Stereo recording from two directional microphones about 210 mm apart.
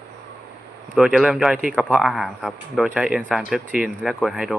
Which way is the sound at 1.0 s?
5° right (ahead or behind).